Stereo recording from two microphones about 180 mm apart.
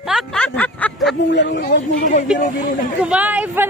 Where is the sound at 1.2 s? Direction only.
85° left.